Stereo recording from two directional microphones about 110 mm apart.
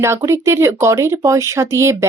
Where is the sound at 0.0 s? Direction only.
25° right (ahead or behind).